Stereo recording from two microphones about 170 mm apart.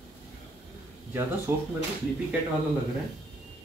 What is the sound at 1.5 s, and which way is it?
Speech, 15° right (ahead or behind).